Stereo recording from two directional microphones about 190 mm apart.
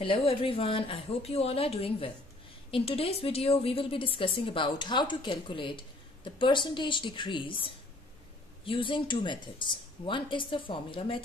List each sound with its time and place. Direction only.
0.0 s a woman's voice: 30° left (ahead or behind)